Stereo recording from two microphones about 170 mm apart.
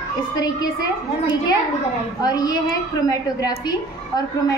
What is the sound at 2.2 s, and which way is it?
A woman's voice, 20° left (ahead or behind).